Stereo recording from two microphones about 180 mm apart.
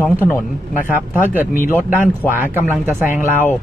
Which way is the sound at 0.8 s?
10° right (ahead or behind).